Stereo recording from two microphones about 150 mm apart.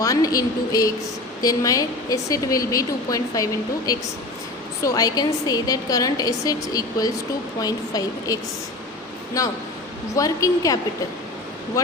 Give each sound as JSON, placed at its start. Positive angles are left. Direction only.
{"t": 0.0, "sound": "a woman's voice", "side_deg": 25}